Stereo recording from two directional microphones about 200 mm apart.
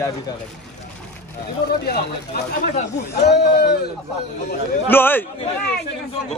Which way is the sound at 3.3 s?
55° left (ahead or behind).